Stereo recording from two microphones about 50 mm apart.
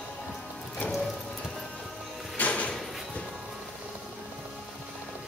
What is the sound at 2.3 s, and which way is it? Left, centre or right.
Music, left.